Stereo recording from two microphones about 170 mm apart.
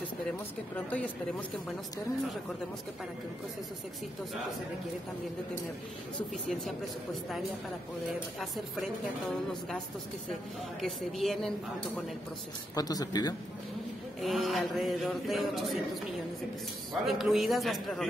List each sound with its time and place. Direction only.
0.7 s speech: 10° left (ahead or behind)
8.4 s speech: centre (ahead or behind)
10.8 s speech: centre (ahead or behind)
12.7 s speech: 20° left (ahead or behind)
14.2 s speech: centre (ahead or behind)
17.0 s speech: centre (ahead or behind)